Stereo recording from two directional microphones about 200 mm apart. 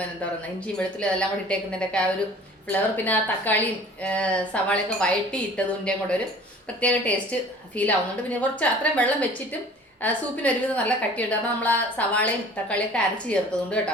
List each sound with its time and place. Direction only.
0.8 s a woman's voice: 5° left (ahead or behind)